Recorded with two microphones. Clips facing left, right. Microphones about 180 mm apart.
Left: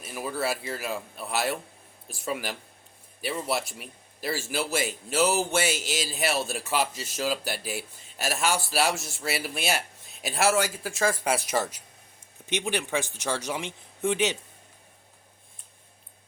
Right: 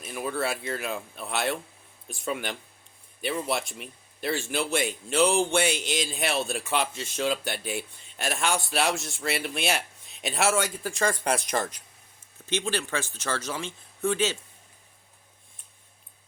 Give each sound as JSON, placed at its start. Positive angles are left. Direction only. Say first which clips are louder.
{"t": 0.0, "sound": "speech", "louder": "right 1 dB", "side_deg": 5}
{"t": 12.5, "sound": "speech", "louder": "even", "side_deg": 15}